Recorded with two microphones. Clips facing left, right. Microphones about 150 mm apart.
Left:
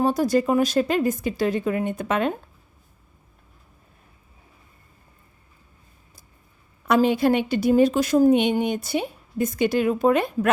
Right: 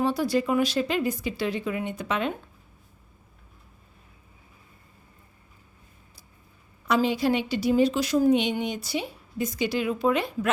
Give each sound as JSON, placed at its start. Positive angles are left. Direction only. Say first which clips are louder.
{"t": 0.0, "sound": "a woman's voice", "louder": "left 4 dB", "side_deg": 45}
{"t": 6.8, "sound": "a woman's voice", "louder": "left 5 dB", "side_deg": 55}